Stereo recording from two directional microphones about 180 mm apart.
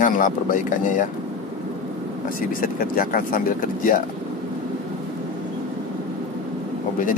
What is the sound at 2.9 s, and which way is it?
Speech, 50° left (ahead or behind).